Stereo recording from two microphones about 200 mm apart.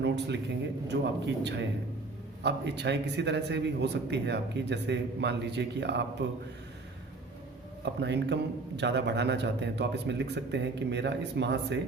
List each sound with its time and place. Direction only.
0.9 s a man's voice: 60° right (ahead or behind)
7.9 s a man's voice: 60° right (ahead or behind)